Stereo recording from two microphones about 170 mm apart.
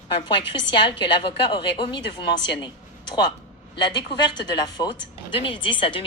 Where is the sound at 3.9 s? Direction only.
25° left (ahead or behind).